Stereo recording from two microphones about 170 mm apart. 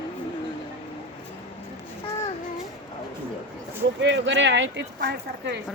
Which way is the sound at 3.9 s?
90° right.